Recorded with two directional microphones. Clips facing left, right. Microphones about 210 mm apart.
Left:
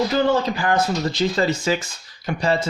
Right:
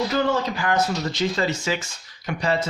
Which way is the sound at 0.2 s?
30° left (ahead or behind).